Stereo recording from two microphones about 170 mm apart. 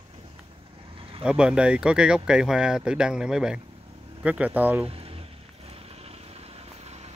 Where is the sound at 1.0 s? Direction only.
30° right (ahead or behind).